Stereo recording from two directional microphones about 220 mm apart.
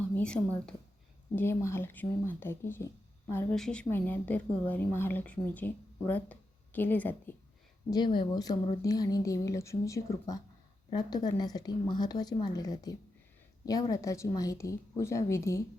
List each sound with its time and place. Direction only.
0.1 s a woman's voice: 5° left (ahead or behind)
7.9 s a woman's voice: 20° left (ahead or behind)